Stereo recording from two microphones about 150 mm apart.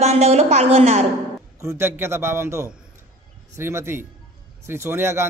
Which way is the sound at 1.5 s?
15° right (ahead or behind).